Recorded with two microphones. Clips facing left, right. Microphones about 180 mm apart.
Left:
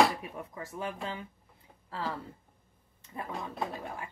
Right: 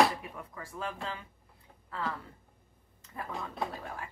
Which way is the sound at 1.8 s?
30° left (ahead or behind).